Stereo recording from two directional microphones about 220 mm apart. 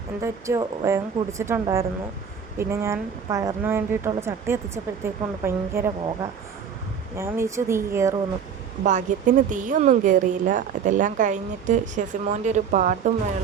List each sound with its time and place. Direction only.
0.2 s speech: 15° right (ahead or behind)
7.2 s speech: 10° right (ahead or behind)
8.8 s speech: 35° right (ahead or behind)